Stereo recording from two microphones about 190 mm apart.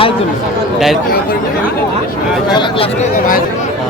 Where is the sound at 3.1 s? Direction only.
45° left (ahead or behind).